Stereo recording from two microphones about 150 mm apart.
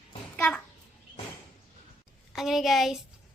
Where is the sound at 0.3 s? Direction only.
10° left (ahead or behind).